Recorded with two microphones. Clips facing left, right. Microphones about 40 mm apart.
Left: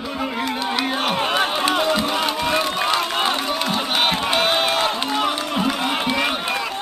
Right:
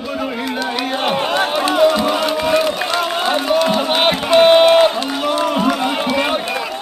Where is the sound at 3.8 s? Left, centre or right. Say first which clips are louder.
Right 5 dB; centre.